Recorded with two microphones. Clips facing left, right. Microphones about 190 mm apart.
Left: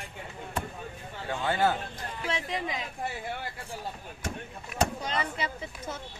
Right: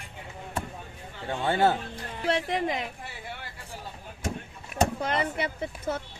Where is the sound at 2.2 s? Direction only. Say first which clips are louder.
Right 6 dB; 60° right (ahead or behind).